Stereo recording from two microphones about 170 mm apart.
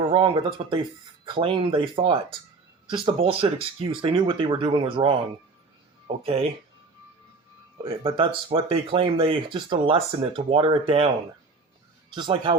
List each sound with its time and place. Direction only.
0.0 s speech: 30° right (ahead or behind)
6.2 s speech: 35° right (ahead or behind)
7.8 s speech: 35° right (ahead or behind)
12.1 s speech: 25° right (ahead or behind)